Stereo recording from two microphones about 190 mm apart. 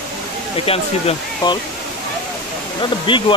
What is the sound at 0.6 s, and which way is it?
Speech, 25° left (ahead or behind).